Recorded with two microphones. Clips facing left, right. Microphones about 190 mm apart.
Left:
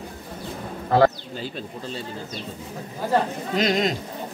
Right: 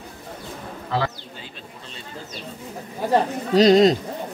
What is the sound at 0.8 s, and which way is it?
Speech, 50° left (ahead or behind).